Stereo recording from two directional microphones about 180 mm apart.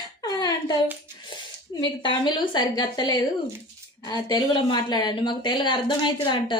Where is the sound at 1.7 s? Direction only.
25° left (ahead or behind).